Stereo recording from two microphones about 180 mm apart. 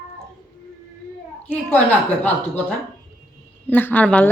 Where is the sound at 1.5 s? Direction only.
10° left (ahead or behind).